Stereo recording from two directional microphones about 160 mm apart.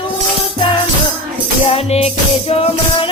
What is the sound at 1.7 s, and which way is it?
Music, 40° left (ahead or behind).